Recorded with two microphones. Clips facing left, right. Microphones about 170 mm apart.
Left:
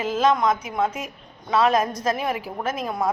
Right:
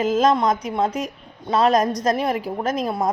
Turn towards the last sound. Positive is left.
turn(degrees=-35)  # may be behind; listen again after turning